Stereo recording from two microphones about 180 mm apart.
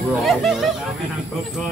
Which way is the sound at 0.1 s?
Centre (ahead or behind).